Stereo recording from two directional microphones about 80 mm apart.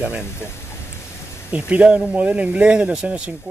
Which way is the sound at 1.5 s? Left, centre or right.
Centre.